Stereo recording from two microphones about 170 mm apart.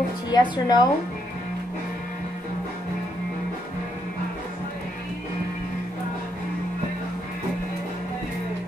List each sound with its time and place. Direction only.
0.3 s speech: 25° left (ahead or behind)